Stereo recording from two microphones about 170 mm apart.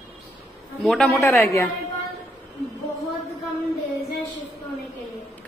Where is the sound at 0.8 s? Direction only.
5° left (ahead or behind).